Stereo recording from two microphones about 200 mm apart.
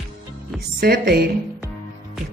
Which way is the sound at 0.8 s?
50° right (ahead or behind).